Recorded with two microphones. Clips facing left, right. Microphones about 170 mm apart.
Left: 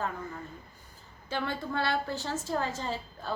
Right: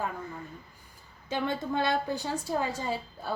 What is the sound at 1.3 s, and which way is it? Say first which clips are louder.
A woman's voice: right 3 dB; 15° right (ahead or behind).